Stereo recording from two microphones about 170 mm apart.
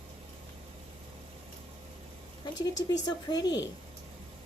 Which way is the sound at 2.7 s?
20° left (ahead or behind).